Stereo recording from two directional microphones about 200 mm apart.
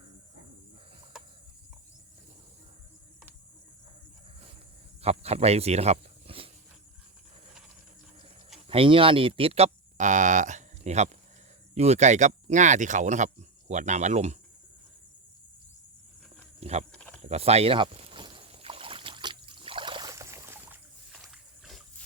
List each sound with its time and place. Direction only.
1.1 s cricket: 5° right (ahead or behind)
5.0 s speech: 30° right (ahead or behind)
8.5 s speech: 30° right (ahead or behind)
16.6 s speech: 30° right (ahead or behind)
17.2 s rowboat: 30° right (ahead or behind); by 21.8 s centre (ahead or behind)